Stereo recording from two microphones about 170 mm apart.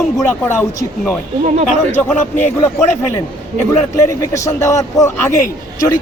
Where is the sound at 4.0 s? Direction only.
15° left (ahead or behind).